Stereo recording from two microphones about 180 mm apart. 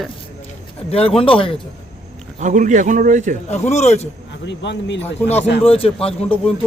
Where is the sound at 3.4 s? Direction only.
40° left (ahead or behind).